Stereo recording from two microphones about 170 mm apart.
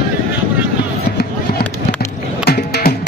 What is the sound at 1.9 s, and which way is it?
Music, 70° left (ahead or behind).